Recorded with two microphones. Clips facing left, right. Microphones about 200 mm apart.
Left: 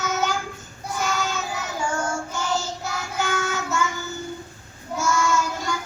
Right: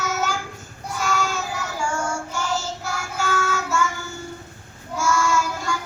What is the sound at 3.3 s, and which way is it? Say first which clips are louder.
Child singing: right 4 dB; 20° left (ahead or behind).